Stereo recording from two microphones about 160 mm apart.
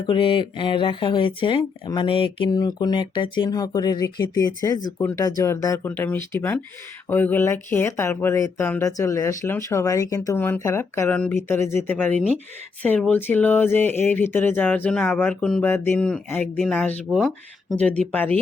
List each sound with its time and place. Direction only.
0.0 s speech: 30° left (ahead or behind); by 18.3 s 10° left (ahead or behind)